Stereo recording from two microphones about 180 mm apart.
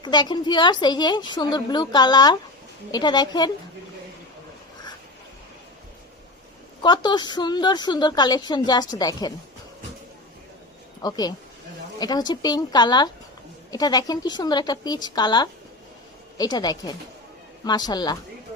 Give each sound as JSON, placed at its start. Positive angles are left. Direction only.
{"t": 0.0, "sound": "a woman's voice", "side_deg": 25}
{"t": 6.8, "sound": "a woman's voice", "side_deg": 25}
{"t": 11.0, "sound": "a woman's voice", "side_deg": 20}